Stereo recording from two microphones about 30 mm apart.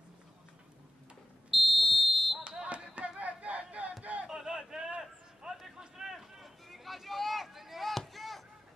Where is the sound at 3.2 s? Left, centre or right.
Right.